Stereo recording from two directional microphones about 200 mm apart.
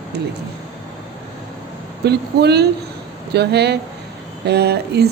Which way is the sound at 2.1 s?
55° right (ahead or behind).